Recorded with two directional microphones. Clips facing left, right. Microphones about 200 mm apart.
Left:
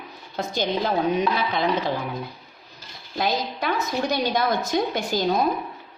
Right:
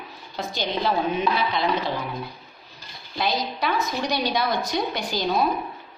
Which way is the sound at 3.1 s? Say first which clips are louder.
Left 1 dB; 45° left (ahead or behind).